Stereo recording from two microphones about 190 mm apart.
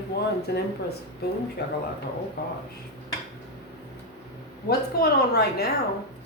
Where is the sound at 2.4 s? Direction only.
60° left (ahead or behind).